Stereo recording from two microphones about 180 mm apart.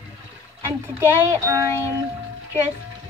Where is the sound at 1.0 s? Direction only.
15° right (ahead or behind).